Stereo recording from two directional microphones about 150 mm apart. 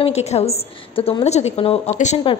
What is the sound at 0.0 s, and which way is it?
A woman's voice, 45° left (ahead or behind).